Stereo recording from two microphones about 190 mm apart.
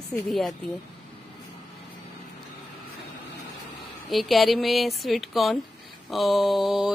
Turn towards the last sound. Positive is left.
turn(degrees=0)  # may be behind; listen again after turning